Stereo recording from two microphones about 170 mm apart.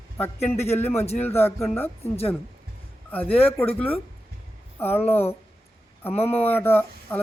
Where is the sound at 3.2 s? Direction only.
35° left (ahead or behind).